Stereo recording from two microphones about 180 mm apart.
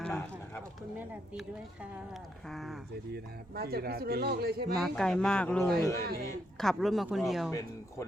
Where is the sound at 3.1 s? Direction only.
60° right (ahead or behind).